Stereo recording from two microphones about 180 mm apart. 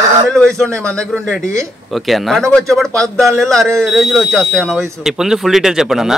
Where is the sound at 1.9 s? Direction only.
Centre (ahead or behind).